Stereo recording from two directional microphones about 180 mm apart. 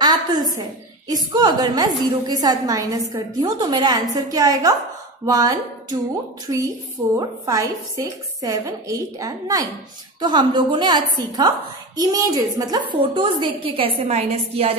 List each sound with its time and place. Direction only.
0.0 s a woman's voice: 25° right (ahead or behind)
7.2 s a woman's voice: 20° right (ahead or behind)